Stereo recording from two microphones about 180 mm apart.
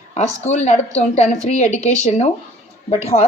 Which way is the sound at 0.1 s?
40° left (ahead or behind).